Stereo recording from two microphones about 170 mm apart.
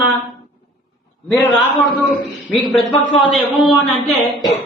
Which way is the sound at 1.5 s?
Centre (ahead or behind).